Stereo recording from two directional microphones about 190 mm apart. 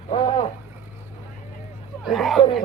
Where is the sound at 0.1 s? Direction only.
30° left (ahead or behind).